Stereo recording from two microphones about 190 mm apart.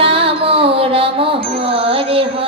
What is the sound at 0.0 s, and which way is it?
Music, 30° right (ahead or behind).